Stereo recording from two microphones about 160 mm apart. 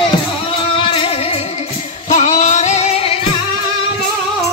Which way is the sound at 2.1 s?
50° left (ahead or behind).